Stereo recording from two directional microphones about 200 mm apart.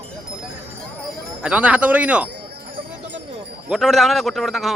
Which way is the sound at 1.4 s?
5° right (ahead or behind).